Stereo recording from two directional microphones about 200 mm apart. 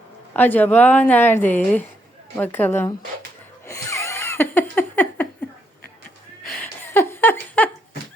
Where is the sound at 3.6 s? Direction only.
15° left (ahead or behind).